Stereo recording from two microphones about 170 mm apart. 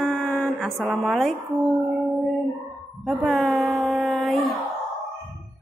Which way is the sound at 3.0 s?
Centre (ahead or behind).